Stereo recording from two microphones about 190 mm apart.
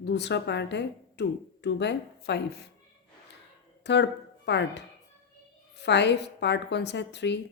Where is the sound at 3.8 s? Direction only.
65° left (ahead or behind).